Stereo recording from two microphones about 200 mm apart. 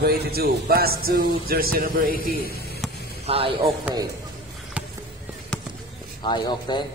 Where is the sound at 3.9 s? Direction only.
5° right (ahead or behind).